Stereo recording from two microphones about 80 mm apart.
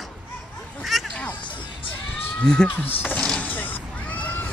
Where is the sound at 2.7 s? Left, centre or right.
Left.